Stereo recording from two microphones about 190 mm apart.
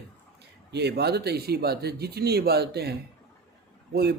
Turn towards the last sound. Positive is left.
turn(degrees=-55)  # may be behind; listen again after turning